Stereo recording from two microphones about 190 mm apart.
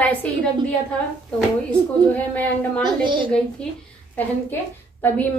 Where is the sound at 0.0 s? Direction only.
10° left (ahead or behind).